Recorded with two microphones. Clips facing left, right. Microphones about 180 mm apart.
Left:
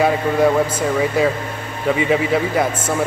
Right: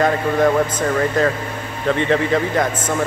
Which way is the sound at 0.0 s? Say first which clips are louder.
Left 1 dB; 10° left (ahead or behind).